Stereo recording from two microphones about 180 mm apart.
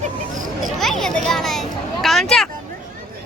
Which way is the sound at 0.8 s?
Centre (ahead or behind).